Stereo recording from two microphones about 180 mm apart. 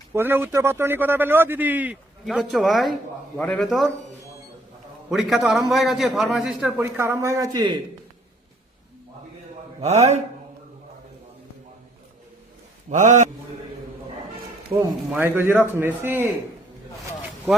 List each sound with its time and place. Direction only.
0.1 s a man's voice: 10° right (ahead or behind)
5.1 s a man's voice: centre (ahead or behind); by 7.8 s 25° right (ahead or behind)
9.8 s a man's voice: 35° right (ahead or behind)
12.9 s a man's voice: 45° right (ahead or behind)
15.2 s speech: 10° right (ahead or behind)